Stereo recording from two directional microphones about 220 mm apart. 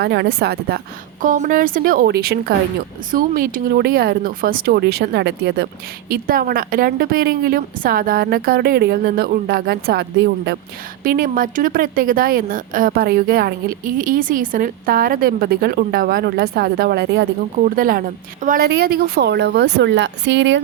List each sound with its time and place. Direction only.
0.0 s a woman's voice: 50° right (ahead or behind)